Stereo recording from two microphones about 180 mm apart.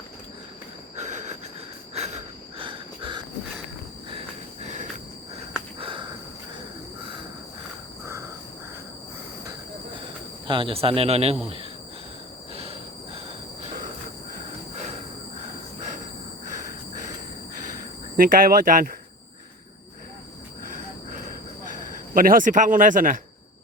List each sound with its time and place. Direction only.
0.9 s rail transport: 40° right (ahead or behind)
2.0 s cricket: 35° right (ahead or behind)
4.6 s cricket: 40° right (ahead or behind)
5.8 s a sound: 30° right (ahead or behind)
10.4 s speech: 30° right (ahead or behind)
18.2 s speech: 50° right (ahead or behind)
22.1 s speech: 50° right (ahead or behind)